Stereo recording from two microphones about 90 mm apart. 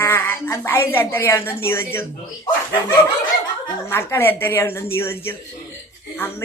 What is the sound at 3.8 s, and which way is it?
A woman's voice, 25° left (ahead or behind).